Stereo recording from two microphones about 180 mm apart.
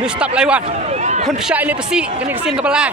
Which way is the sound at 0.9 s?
40° right (ahead or behind).